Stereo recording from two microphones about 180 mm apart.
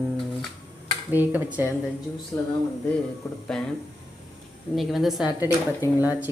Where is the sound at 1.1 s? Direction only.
10° right (ahead or behind).